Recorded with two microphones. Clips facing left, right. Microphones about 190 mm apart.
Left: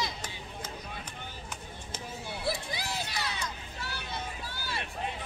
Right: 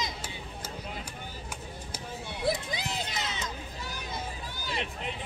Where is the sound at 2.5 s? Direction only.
20° right (ahead or behind).